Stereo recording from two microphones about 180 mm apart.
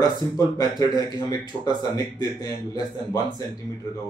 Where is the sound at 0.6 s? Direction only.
20° left (ahead or behind).